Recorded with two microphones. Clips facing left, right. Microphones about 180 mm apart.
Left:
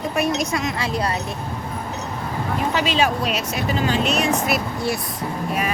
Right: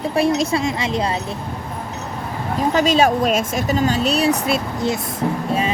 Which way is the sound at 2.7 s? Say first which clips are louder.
Right 6 dB; 45° right (ahead or behind).